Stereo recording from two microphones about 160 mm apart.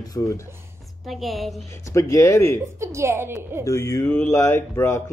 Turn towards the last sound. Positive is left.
turn(degrees=15)  # may be behind; listen again after turning